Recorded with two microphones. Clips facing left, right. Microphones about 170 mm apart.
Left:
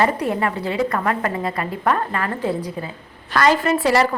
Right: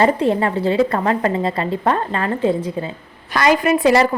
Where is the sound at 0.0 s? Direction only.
25° right (ahead or behind).